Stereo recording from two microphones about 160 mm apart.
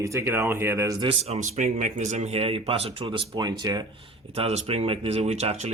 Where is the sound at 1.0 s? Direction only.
40° right (ahead or behind); by 4.1 s 25° right (ahead or behind).